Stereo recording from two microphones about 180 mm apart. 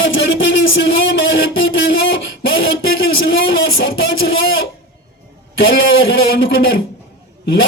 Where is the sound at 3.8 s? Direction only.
90° left.